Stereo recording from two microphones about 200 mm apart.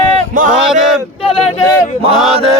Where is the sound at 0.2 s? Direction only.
40° right (ahead or behind).